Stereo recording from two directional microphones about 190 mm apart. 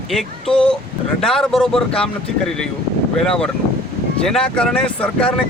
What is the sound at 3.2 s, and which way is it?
Speech, 5° left (ahead or behind).